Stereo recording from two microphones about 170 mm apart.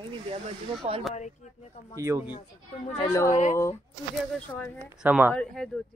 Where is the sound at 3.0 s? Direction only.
20° left (ahead or behind).